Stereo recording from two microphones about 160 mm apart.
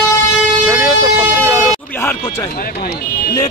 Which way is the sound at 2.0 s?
15° left (ahead or behind).